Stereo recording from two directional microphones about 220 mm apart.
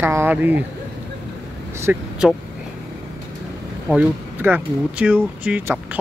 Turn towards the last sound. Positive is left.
turn(degrees=-5)  # may be behind; listen again after turning